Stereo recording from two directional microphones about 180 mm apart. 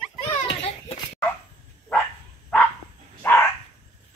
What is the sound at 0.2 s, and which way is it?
Children playing, 40° left (ahead or behind).